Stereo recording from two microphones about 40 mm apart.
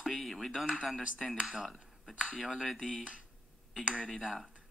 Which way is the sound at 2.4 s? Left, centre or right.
Centre.